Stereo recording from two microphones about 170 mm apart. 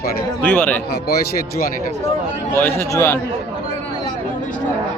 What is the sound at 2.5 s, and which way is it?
Speech, 15° left (ahead or behind).